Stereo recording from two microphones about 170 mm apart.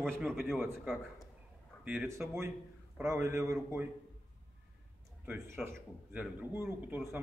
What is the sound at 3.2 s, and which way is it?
Speech, 20° right (ahead or behind).